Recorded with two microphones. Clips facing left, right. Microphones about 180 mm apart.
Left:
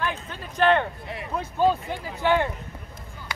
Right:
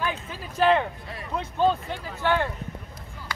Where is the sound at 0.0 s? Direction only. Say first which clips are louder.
Even; 5° right (ahead or behind).